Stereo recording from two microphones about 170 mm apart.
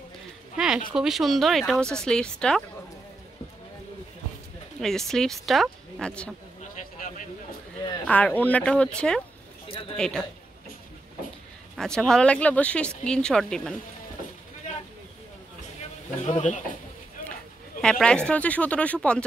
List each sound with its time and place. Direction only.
0.6 s a sound: 5° right (ahead or behind)
0.9 s speech: centre (ahead or behind)
4.7 s speech: centre (ahead or behind)
8.1 s speech: 10° left (ahead or behind)
11.7 s speech: centre (ahead or behind)
16.3 s speech: 45° left (ahead or behind)
17.8 s speech: 5° left (ahead or behind)